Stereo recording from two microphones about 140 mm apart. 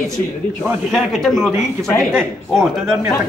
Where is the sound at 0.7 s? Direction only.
Centre (ahead or behind).